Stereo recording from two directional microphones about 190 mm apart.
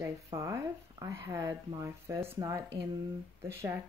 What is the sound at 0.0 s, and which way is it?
Speech, 15° right (ahead or behind).